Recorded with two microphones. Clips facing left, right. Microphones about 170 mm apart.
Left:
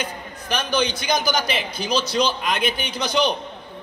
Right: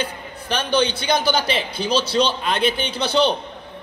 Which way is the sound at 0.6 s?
30° right (ahead or behind).